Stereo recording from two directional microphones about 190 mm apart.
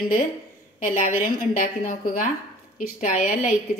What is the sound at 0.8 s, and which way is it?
A woman's voice, 40° left (ahead or behind).